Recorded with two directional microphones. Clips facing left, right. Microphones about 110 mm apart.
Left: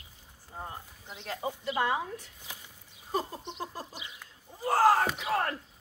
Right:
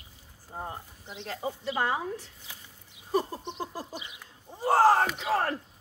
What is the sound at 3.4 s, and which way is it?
A woman's voice, 30° right (ahead or behind).